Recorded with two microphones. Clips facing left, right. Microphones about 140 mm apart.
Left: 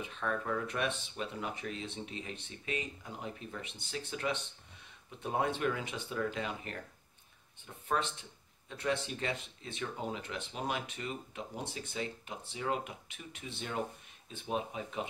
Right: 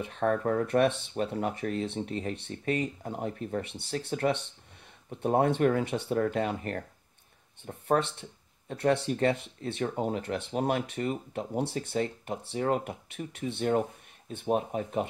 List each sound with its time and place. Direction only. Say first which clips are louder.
0.0 s speech: right 9 dB; 55° right (ahead or behind)
8.0 s speech: right 5 dB; 60° right (ahead or behind)